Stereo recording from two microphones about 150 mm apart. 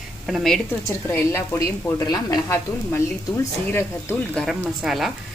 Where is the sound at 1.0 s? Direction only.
15° left (ahead or behind).